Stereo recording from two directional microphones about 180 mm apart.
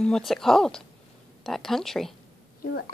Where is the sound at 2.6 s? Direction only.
60° left (ahead or behind).